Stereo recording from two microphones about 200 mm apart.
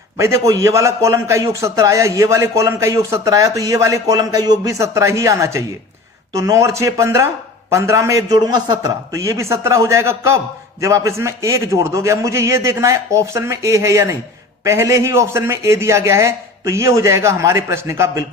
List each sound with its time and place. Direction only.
0.2 s a man's voice: 15° right (ahead or behind)